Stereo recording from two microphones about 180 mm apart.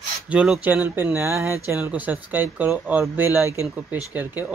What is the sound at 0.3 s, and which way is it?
Speech, 5° right (ahead or behind).